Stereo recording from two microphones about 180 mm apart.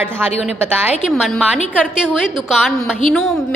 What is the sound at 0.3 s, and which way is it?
Speech, 35° left (ahead or behind).